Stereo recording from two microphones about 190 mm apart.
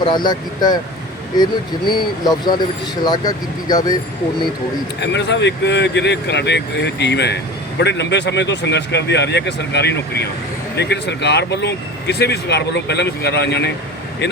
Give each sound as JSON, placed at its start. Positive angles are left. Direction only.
{"t": 0.0, "sound": "speech", "side_deg": 25}
{"t": 2.2, "sound": "speech", "side_deg": 20}
{"t": 4.9, "sound": "speech", "side_deg": 65}